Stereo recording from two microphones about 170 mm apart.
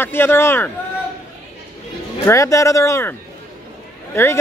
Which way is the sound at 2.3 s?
20° left (ahead or behind).